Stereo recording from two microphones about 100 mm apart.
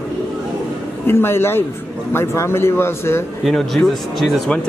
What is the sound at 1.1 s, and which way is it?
A man's voice, 25° left (ahead or behind).